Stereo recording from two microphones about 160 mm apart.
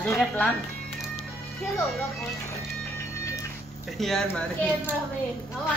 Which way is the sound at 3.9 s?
Centre (ahead or behind).